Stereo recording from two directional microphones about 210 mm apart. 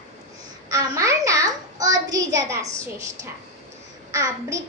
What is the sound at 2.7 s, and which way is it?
A child's voice, 15° right (ahead or behind).